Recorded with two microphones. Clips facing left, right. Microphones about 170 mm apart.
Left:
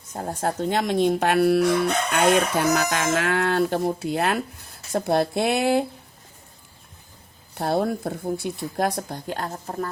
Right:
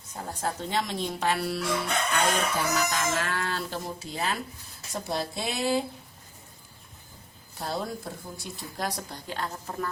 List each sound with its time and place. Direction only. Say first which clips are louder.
0.1 s speech: left 6 dB; 50° left (ahead or behind)
2.1 s speech: left 8 dB; 70° left (ahead or behind)
7.6 s speech: left 9 dB; 60° left (ahead or behind); by 9.9 s 40° left (ahead or behind)